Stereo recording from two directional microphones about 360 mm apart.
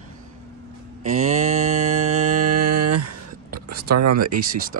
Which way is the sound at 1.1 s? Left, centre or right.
Centre.